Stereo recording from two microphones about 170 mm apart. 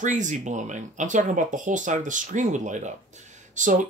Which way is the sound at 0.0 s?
45° right (ahead or behind).